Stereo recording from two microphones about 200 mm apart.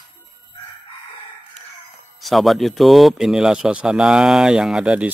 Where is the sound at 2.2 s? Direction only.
Centre (ahead or behind).